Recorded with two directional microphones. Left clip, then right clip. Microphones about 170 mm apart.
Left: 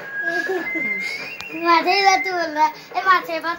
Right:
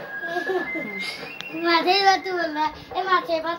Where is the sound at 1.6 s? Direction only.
10° left (ahead or behind).